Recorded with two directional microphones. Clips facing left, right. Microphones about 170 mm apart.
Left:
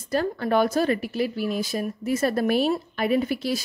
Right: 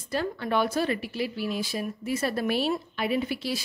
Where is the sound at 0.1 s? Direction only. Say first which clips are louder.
Left 5 dB; 45° left (ahead or behind).